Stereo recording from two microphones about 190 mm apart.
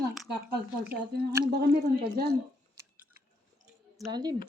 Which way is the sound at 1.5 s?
55° right (ahead or behind).